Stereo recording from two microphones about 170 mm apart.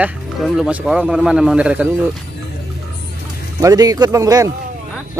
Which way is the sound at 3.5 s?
20° right (ahead or behind).